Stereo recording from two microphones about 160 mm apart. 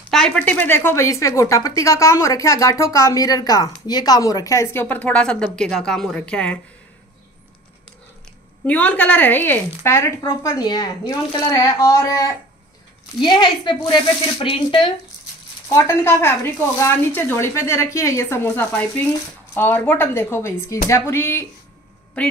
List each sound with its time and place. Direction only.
0.1 s speech: 5° left (ahead or behind)
8.6 s speech: 10° left (ahead or behind); by 14.9 s 35° left (ahead or behind)
15.7 s speech: 15° left (ahead or behind)